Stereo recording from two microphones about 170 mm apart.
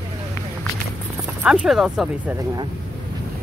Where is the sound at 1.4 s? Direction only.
5° right (ahead or behind).